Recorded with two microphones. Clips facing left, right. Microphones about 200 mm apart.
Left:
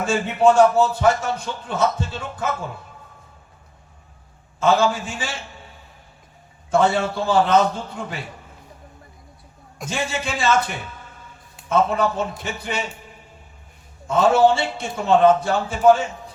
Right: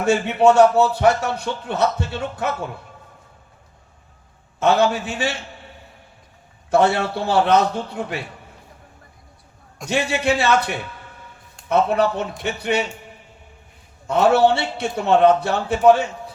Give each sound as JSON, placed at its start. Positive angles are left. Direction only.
{"t": 0.0, "sound": "a man's voice", "side_deg": -65}
{"t": 4.6, "sound": "a man's voice", "side_deg": -65}
{"t": 6.7, "sound": "a man's voice", "side_deg": -65}
{"t": 9.9, "sound": "speech", "side_deg": -65}
{"t": 11.7, "sound": "a man's voice", "side_deg": -65}
{"t": 14.1, "sound": "a man's voice", "side_deg": -65}